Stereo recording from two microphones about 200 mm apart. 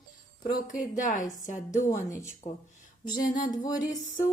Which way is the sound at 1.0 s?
40° left (ahead or behind).